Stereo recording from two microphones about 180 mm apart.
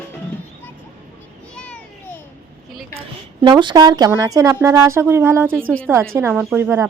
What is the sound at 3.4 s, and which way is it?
A woman's voice, 25° right (ahead or behind).